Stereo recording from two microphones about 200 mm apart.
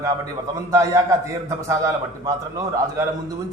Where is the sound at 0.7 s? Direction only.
15° right (ahead or behind).